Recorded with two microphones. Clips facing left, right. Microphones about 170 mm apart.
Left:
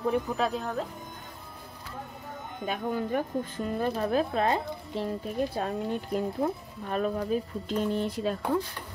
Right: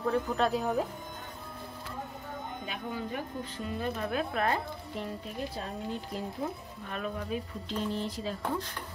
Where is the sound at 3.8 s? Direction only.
35° left (ahead or behind).